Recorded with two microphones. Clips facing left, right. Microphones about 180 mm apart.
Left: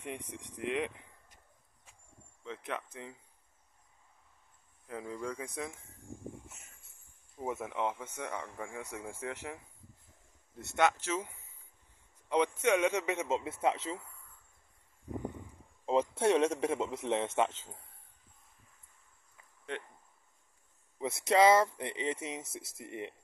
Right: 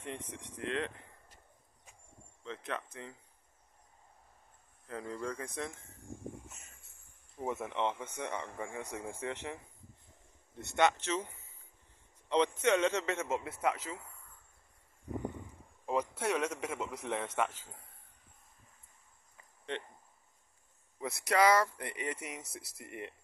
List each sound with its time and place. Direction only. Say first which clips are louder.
0.0 s a man's voice: left 1 dB; 10° left (ahead or behind)
2.4 s a man's voice: even; 10° left (ahead or behind)
4.8 s a man's voice: even; 10° left (ahead or behind)
7.3 s speech: even; 5° left (ahead or behind)
10.6 s a man's voice: even; 5° left (ahead or behind); by 13.9 s 25° left (ahead or behind)
15.8 s speech: left 5 dB; 25° left (ahead or behind)
19.3 s insect: right 1 dB; 5° left (ahead or behind)
21.0 s speech: left 3 dB; 25° left (ahead or behind)